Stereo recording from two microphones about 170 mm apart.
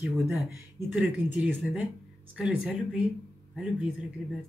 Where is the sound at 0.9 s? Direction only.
10° right (ahead or behind).